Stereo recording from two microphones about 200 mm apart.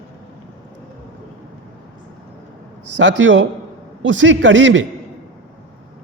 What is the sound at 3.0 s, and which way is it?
A man's voice, 65° right (ahead or behind).